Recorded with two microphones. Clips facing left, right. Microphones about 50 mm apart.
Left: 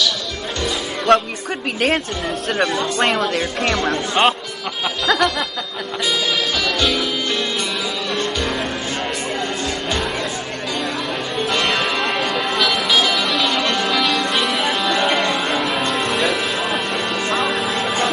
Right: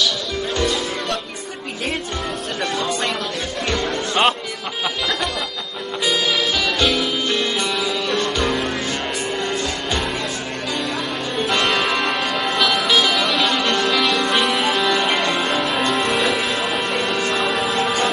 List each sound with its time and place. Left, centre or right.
1.1 s speech: left
4.2 s speech: centre
5.0 s music: left
6.8 s music: centre
11.3 s music: centre